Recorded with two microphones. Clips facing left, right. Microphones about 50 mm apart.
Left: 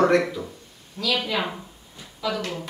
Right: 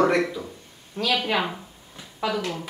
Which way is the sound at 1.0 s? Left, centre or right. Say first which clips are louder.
Right 1 dB; right.